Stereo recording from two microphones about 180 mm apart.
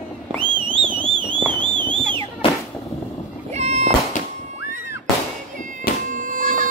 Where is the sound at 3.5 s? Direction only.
40° right (ahead or behind).